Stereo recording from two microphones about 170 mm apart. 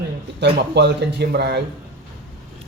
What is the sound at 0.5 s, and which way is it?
Speech, 80° right.